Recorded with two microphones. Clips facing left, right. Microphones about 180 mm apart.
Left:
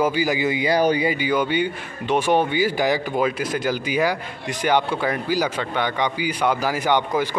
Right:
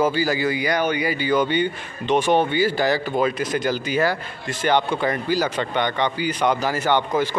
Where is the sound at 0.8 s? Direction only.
35° left (ahead or behind).